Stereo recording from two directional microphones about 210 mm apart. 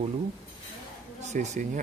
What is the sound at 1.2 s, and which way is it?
Speech, 35° right (ahead or behind).